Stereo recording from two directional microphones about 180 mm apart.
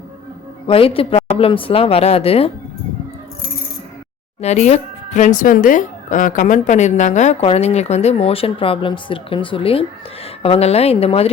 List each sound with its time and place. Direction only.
0.7 s speech: 30° left (ahead or behind)
4.4 s speech: 40° left (ahead or behind)